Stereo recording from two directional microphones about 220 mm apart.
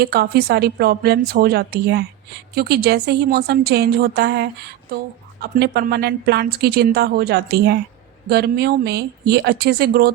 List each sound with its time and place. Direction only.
0.0 s a woman's voice: 45° right (ahead or behind)